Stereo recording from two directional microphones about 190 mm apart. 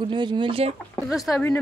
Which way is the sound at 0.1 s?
25° right (ahead or behind).